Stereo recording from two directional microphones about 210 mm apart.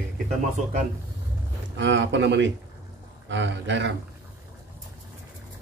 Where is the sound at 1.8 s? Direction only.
60° right (ahead or behind).